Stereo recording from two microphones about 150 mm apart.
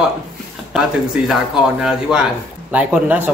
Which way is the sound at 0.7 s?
Centre (ahead or behind).